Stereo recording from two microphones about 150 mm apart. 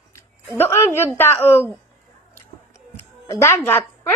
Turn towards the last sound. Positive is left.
turn(degrees=15)  # may be behind; listen again after turning